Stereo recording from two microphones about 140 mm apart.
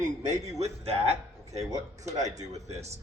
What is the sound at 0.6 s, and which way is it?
Speech, 45° right (ahead or behind).